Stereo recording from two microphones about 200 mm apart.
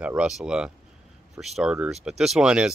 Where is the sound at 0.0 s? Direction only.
5° right (ahead or behind).